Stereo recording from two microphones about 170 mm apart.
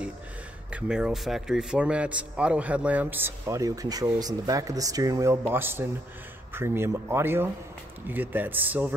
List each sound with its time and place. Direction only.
0.7 s speech: 5° right (ahead or behind)